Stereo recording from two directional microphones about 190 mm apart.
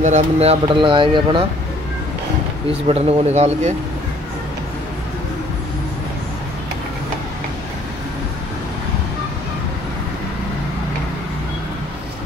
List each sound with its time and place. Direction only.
0.0 s speech: 35° right (ahead or behind)
2.9 s speech: 35° right (ahead or behind)